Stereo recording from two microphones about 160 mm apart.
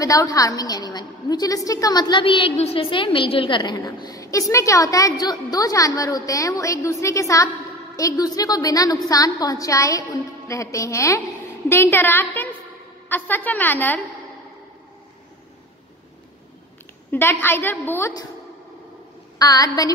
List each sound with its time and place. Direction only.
0.0 s a woman's voice: 20° left (ahead or behind)
17.1 s a woman's voice: 15° left (ahead or behind)
19.3 s a woman's voice: 25° left (ahead or behind)